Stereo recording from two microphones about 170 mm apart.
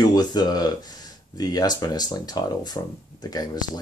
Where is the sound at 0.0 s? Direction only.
25° left (ahead or behind).